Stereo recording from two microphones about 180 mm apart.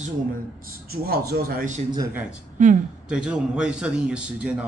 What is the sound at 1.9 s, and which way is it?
Speech, 15° right (ahead or behind).